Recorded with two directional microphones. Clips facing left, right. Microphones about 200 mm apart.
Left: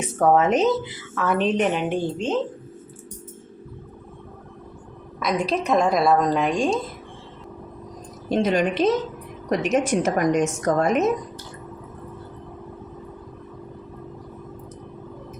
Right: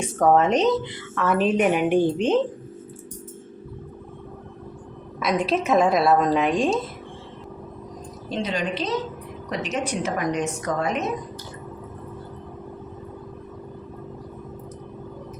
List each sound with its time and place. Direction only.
0.2 s a woman's voice: centre (ahead or behind); by 2.4 s 15° right (ahead or behind)
5.2 s a woman's voice: centre (ahead or behind)
8.3 s a woman's voice: 50° left (ahead or behind)